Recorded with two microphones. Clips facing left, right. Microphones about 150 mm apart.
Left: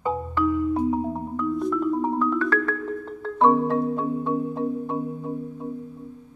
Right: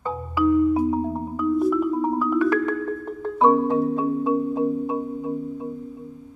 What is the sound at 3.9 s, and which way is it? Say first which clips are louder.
Music: right 3 dB; 5° right (ahead or behind).